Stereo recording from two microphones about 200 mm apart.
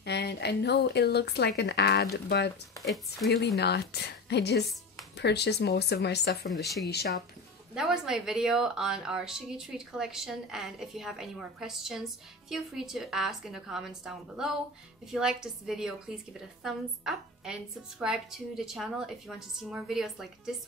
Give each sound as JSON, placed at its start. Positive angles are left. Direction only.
{"t": 0.0, "sound": "speech", "side_deg": 55}
{"t": 7.7, "sound": "speech", "side_deg": 0}